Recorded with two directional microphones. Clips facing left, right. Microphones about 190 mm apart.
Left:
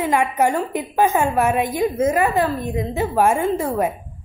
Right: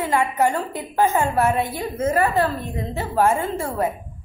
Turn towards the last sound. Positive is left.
turn(degrees=15)  # may be behind; listen again after turning